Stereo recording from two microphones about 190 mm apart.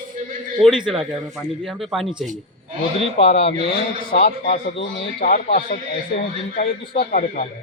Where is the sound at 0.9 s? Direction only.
Centre (ahead or behind).